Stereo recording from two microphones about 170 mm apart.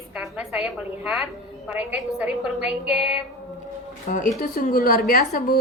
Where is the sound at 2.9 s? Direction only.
35° left (ahead or behind).